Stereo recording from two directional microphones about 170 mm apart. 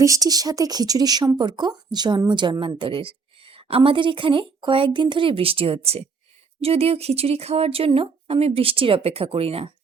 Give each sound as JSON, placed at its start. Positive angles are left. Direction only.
{"t": 0.0, "sound": "speech", "side_deg": -20}